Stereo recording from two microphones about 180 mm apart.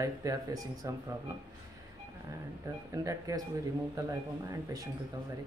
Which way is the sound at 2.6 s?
15° right (ahead or behind).